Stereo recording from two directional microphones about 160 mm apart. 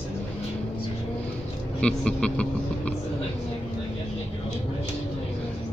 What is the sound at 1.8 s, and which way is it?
Speech, 5° left (ahead or behind).